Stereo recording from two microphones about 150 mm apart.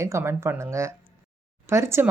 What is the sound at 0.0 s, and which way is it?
Speech, 15° right (ahead or behind).